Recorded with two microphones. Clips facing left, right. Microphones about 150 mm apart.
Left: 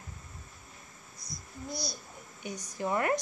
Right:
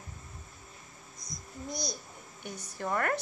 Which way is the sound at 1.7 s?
5° left (ahead or behind).